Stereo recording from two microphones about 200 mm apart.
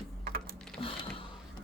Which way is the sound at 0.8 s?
25° left (ahead or behind).